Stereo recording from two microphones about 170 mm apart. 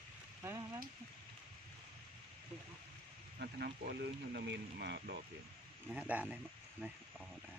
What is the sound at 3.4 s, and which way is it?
Speech, 65° right (ahead or behind).